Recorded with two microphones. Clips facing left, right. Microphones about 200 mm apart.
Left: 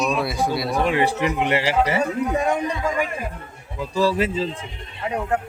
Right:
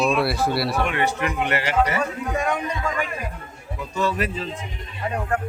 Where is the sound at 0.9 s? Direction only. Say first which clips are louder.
Left 4 dB; 30° left (ahead or behind).